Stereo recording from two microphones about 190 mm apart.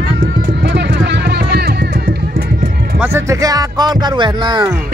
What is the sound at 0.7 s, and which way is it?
Music, 65° right (ahead or behind).